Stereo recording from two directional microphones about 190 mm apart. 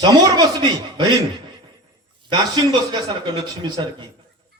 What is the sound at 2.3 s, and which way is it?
A man's voice, 25° right (ahead or behind).